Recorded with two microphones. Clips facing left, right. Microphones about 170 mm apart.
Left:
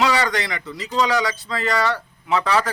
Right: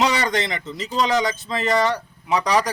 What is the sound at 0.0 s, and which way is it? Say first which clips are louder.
Speech: even; 20° right (ahead or behind).